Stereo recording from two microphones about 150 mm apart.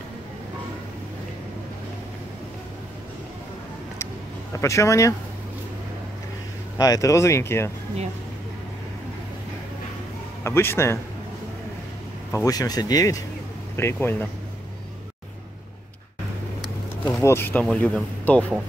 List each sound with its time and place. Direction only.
4.0 s vehicle: 20° left (ahead or behind)
6.8 s speech: 20° left (ahead or behind)
10.4 s speech: 15° left (ahead or behind)
12.3 s speech: 20° left (ahead or behind)
17.0 s speech: 15° left (ahead or behind)